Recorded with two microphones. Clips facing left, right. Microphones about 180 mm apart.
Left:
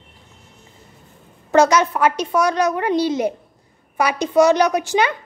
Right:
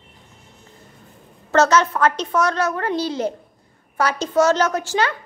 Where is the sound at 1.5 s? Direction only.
15° left (ahead or behind).